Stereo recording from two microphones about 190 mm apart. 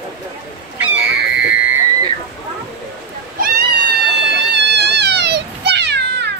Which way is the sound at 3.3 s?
50° right (ahead or behind).